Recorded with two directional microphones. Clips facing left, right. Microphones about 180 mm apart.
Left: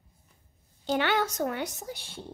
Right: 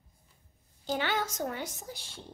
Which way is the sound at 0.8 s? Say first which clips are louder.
Left 5 dB; 65° left (ahead or behind).